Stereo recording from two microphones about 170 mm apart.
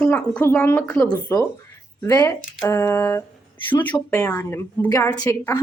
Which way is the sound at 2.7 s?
15° left (ahead or behind).